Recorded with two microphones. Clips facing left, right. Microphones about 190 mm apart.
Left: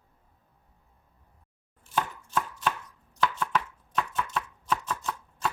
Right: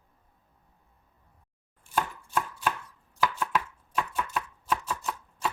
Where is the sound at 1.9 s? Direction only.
10° right (ahead or behind).